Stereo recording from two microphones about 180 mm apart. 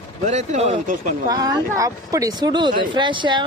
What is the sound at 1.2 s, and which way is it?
Speech, 25° right (ahead or behind).